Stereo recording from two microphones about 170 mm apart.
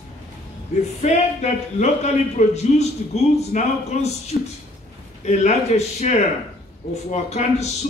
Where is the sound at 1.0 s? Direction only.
40° left (ahead or behind).